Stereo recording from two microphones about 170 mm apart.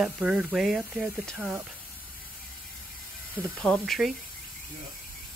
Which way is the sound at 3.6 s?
5° left (ahead or behind).